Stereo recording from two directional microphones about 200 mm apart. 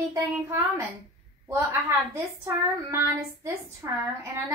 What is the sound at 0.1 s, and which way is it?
A child's voice, 15° right (ahead or behind).